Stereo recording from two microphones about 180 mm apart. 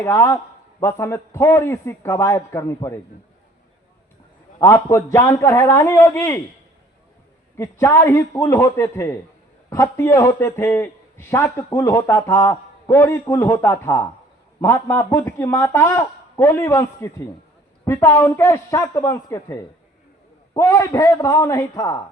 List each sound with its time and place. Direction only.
0.0 s a man's voice: 15° left (ahead or behind)
4.6 s a man's voice: 15° left (ahead or behind)
7.5 s a man's voice: 15° left (ahead or behind)